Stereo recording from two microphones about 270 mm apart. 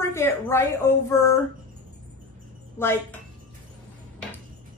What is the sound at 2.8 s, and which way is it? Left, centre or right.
Speech, centre.